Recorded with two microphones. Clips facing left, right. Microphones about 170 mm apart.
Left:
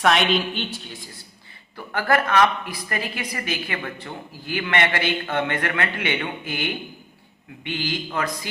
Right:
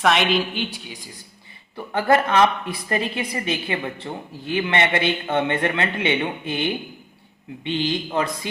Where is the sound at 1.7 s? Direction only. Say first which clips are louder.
Right 3 dB; 20° right (ahead or behind).